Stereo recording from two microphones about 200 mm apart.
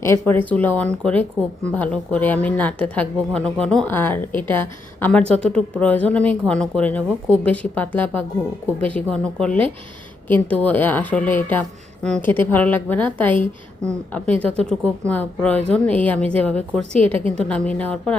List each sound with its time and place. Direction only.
0.0 s a woman's voice: 10° left (ahead or behind)
16.9 s a woman's voice: 30° right (ahead or behind)
17.2 s a woman's voice: 5° left (ahead or behind)